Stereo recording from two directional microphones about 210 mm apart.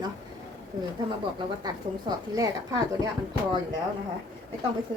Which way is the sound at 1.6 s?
15° right (ahead or behind).